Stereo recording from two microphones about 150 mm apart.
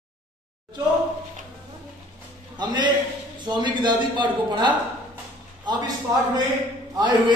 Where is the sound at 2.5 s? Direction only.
30° right (ahead or behind).